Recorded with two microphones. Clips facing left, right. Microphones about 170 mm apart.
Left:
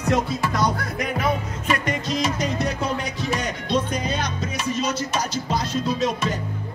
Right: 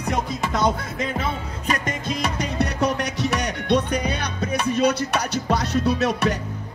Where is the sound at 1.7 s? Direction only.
50° right (ahead or behind); by 6.3 s 70° right (ahead or behind).